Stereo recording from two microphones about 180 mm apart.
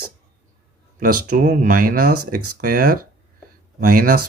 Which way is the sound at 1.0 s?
50° right (ahead or behind).